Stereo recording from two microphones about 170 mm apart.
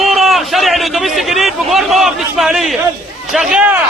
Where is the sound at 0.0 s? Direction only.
Centre (ahead or behind).